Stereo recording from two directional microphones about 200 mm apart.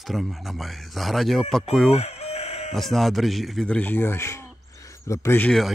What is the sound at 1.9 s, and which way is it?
Chicken, 35° left (ahead or behind).